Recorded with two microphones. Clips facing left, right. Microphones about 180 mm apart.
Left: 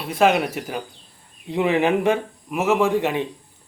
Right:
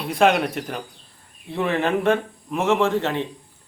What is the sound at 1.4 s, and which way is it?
Speech, 15° left (ahead or behind).